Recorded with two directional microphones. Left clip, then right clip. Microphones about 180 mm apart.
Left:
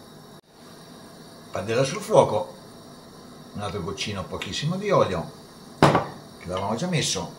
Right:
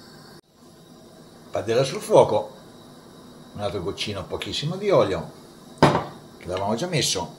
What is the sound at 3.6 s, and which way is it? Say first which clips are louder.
Speech: right 3 dB; 30° right (ahead or behind).